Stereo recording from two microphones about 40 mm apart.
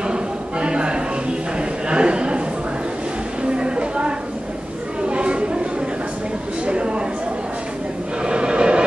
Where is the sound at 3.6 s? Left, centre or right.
Right.